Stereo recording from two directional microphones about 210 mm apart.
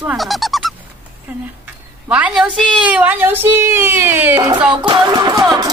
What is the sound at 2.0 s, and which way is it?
Speech, 5° right (ahead or behind).